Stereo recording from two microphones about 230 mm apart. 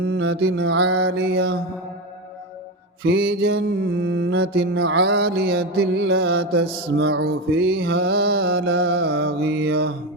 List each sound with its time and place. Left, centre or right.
0.0 s mantra: right
0.9 s mantra: right
1.3 s mantra: right
3.0 s mantra: right
4.1 s mantra: right